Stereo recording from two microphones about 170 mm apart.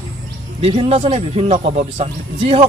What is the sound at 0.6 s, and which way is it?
A man's voice, 35° right (ahead or behind).